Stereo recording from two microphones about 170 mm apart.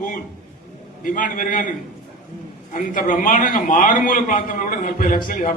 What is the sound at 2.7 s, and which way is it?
A man's voice, 55° left (ahead or behind).